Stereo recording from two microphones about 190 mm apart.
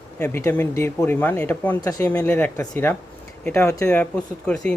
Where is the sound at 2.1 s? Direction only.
10° left (ahead or behind).